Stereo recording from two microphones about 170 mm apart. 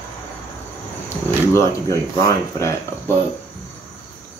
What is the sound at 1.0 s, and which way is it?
Speech, 15° left (ahead or behind).